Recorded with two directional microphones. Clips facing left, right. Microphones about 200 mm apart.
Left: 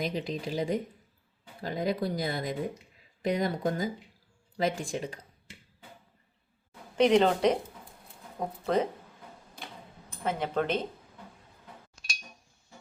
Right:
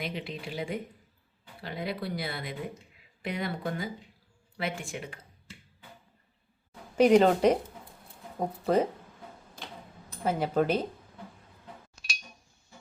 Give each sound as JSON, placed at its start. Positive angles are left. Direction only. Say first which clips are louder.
{"t": 0.0, "sound": "speech", "louder": "left 4 dB", "side_deg": 40}
{"t": 6.9, "sound": "speech", "louder": "right 2 dB", "side_deg": -5}
{"t": 10.2, "sound": "speech", "louder": "right 3 dB", "side_deg": -5}